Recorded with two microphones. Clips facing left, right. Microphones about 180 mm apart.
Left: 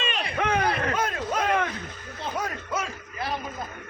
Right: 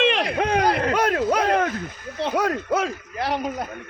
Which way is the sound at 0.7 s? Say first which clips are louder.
Right 6 dB; 75° right (ahead or behind).